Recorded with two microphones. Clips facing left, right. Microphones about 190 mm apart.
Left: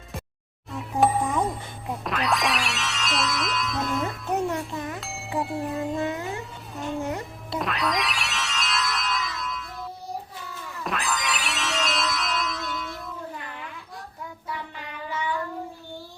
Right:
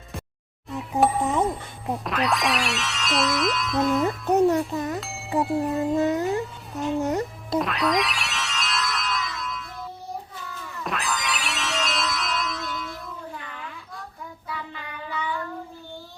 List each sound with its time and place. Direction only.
0.7 s music: centre (ahead or behind)
1.2 s music: 25° right (ahead or behind)
2.0 s music: centre (ahead or behind)
4.3 s music: 40° right (ahead or behind)
4.9 s chink: centre (ahead or behind)
5.4 s music: centre (ahead or behind)
6.0 s speech: 40° right (ahead or behind)
7.0 s music: 40° right (ahead or behind)
7.6 s music: centre (ahead or behind)
10.8 s music: centre (ahead or behind)